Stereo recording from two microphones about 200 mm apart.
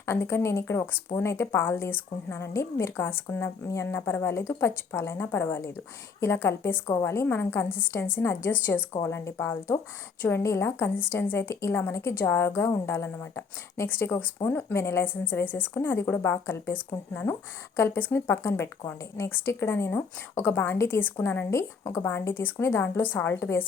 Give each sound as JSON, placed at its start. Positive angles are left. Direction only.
{"t": 0.0, "sound": "a woman's voice", "side_deg": 10}